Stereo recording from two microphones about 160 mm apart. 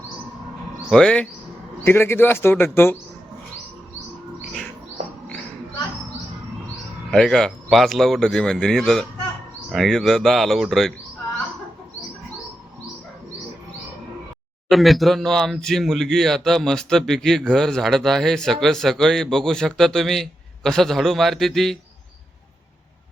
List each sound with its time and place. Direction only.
0.9 s speech: 5° left (ahead or behind)
7.1 s speech: 5° left (ahead or behind)
14.7 s speech: centre (ahead or behind)